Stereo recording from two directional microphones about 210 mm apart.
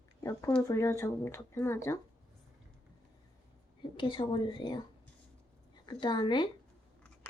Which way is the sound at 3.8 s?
25° left (ahead or behind).